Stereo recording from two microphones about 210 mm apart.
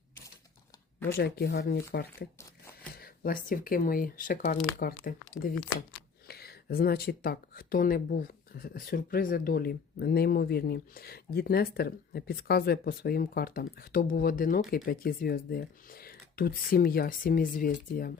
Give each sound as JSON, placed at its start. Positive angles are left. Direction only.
{"t": 1.0, "sound": "speech", "side_deg": 50}
{"t": 6.2, "sound": "speech", "side_deg": 45}